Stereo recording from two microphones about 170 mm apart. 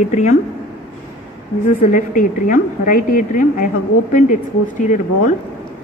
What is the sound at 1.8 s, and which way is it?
A woman's voice, 50° left (ahead or behind).